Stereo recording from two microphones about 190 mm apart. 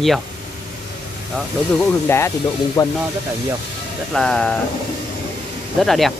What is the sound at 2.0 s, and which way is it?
Speech, 15° left (ahead or behind).